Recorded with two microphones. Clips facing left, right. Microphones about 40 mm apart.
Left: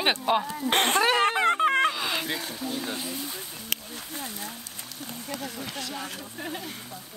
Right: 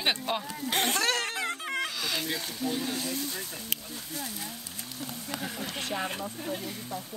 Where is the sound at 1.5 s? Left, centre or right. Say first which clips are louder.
Left 11 dB; left.